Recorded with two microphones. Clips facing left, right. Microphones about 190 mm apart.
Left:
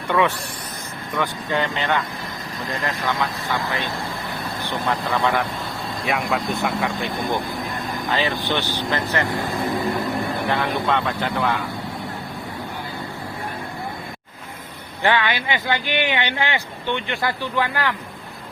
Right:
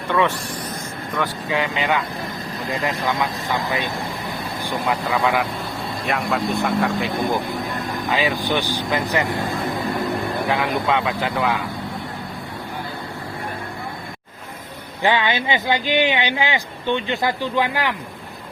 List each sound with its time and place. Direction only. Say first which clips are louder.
0.1 s speech: even; 10° left (ahead or behind)
1.1 s speech: even; 5° right (ahead or behind)
8.1 s speech: right 2 dB; 10° right (ahead or behind)
10.4 s speech: right 2 dB; 5° right (ahead or behind)
15.0 s speech: right 1 dB; 20° right (ahead or behind)